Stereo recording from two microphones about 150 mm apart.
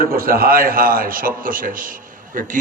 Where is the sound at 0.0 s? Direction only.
80° right.